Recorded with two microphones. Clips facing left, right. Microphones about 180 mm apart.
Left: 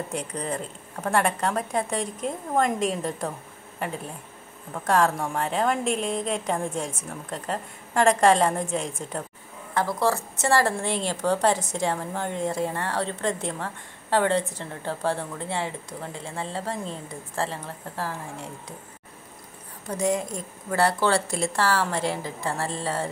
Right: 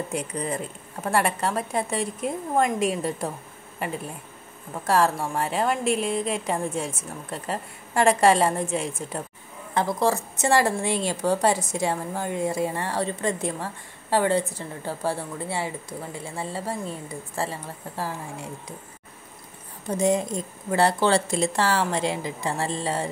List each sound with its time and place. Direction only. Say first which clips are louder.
0.1 s a woman's voice: right 1 dB; 10° right (ahead or behind)
9.8 s a woman's voice: right 1 dB; 15° right (ahead or behind)
19.9 s a woman's voice: right 3 dB; 20° right (ahead or behind)